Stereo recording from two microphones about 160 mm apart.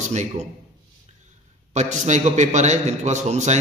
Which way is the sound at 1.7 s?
50° right (ahead or behind).